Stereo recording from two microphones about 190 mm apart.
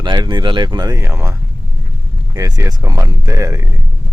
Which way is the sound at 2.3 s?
15° right (ahead or behind).